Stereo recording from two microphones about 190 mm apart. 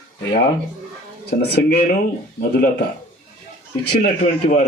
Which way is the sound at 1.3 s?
55° left (ahead or behind).